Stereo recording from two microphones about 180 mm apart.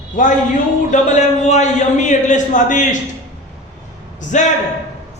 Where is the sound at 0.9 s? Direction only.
40° left (ahead or behind).